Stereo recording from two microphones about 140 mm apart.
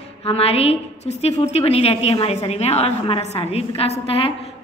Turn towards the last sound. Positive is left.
turn(degrees=45)  # may be behind; listen again after turning